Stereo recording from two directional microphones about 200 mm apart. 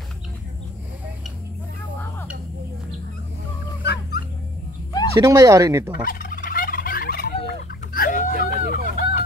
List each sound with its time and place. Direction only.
3.8 s dog: 55° left (ahead or behind)
5.2 s speech: 20° right (ahead or behind)
6.0 s fowl: 45° left (ahead or behind)